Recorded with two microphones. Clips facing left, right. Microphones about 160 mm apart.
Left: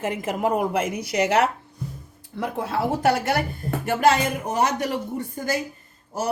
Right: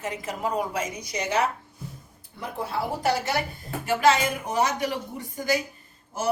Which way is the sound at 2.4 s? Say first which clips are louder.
Left 5 dB; 80° left.